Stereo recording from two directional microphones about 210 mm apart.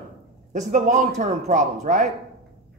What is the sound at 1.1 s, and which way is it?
Speech, 35° right (ahead or behind).